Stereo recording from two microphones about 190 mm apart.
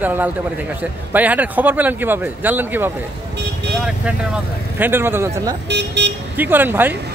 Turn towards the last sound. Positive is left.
turn(degrees=-10)  # may be behind; listen again after turning